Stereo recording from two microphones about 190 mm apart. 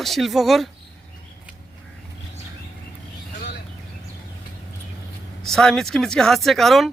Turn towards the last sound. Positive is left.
turn(degrees=0)  # may be behind; listen again after turning